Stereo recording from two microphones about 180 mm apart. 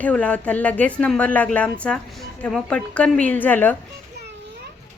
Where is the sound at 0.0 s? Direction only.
5° left (ahead or behind).